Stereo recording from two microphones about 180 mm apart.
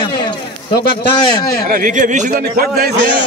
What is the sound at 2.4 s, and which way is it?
Speech, 60° right (ahead or behind).